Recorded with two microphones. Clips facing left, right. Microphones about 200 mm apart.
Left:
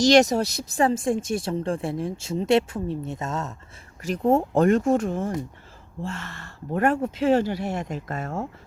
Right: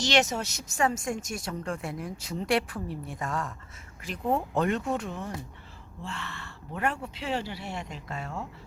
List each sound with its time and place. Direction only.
0.0 s speech: 40° left (ahead or behind); by 3.5 s 25° left (ahead or behind)
4.0 s speech: 40° left (ahead or behind)